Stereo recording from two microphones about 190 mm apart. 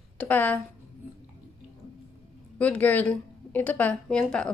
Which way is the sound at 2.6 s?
10° left (ahead or behind).